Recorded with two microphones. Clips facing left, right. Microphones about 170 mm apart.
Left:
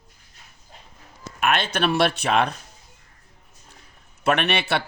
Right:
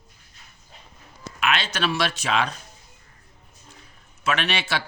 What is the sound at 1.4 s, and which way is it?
Speech, 55° left (ahead or behind).